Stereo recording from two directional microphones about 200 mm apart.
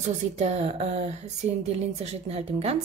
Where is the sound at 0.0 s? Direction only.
35° right (ahead or behind).